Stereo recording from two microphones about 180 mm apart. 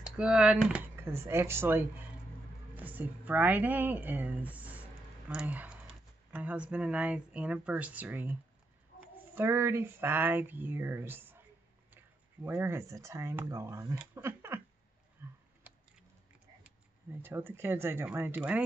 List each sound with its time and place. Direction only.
0.0 s a woman's voice: 5° right (ahead or behind)
12.4 s speech: 15° right (ahead or behind)
15.2 s typing: 15° right (ahead or behind)
16.6 s speech: 10° right (ahead or behind)